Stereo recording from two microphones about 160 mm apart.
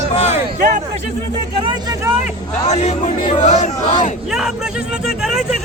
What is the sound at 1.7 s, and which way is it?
Vehicle, 25° right (ahead or behind).